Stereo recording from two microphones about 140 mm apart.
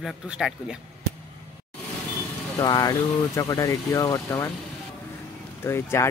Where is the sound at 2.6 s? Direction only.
25° left (ahead or behind).